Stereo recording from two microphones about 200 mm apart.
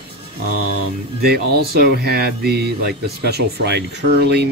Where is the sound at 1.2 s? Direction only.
50° right (ahead or behind).